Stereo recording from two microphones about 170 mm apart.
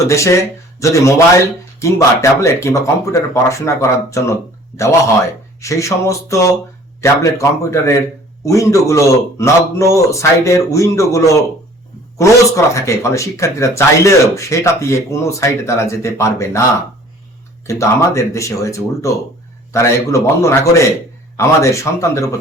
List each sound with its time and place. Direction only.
0.0 s speech: 15° left (ahead or behind)
5.5 s speech: 20° left (ahead or behind)
17.7 s speech: 15° left (ahead or behind)